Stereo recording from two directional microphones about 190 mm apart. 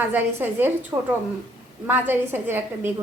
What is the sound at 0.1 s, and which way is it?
A woman's voice, 10° right (ahead or behind).